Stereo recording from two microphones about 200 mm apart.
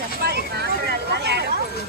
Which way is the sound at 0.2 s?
55° right (ahead or behind).